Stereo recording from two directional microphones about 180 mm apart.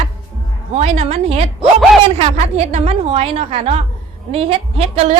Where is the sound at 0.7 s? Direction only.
35° right (ahead or behind).